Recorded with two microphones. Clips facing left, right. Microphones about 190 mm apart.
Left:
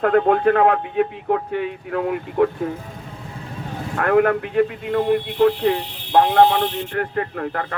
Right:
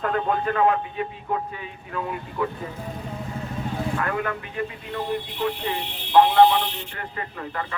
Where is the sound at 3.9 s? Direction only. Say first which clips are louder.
Left 10 dB; 65° left (ahead or behind).